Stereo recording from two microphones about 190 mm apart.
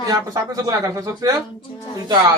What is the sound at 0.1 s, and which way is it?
Speech, 20° right (ahead or behind).